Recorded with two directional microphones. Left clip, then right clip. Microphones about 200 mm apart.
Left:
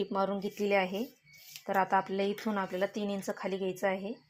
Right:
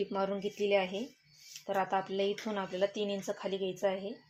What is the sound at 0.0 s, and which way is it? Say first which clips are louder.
Speech: left 2 dB; 10° left (ahead or behind).